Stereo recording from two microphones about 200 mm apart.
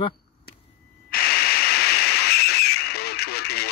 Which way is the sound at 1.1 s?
50° left (ahead or behind).